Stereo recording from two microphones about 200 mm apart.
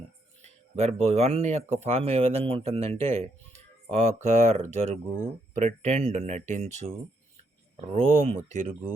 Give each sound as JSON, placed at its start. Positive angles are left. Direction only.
{"t": 0.4, "sound": "speech", "side_deg": -35}
{"t": 7.9, "sound": "speech", "side_deg": -35}